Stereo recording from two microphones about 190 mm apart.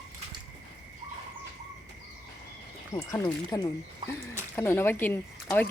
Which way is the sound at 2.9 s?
15° left (ahead or behind).